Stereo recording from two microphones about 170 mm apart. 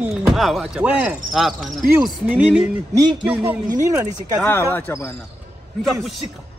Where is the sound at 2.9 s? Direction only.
25° right (ahead or behind).